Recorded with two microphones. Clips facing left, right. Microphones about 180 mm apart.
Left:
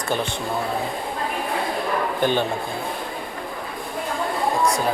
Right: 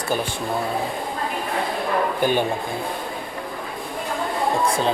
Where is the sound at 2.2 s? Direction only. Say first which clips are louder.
Even; 10° right (ahead or behind).